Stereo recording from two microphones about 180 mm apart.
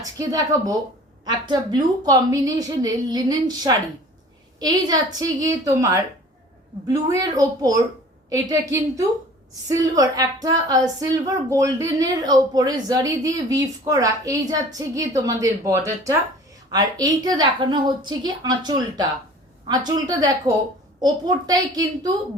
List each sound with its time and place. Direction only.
0.0 s a woman's voice: 20° right (ahead or behind)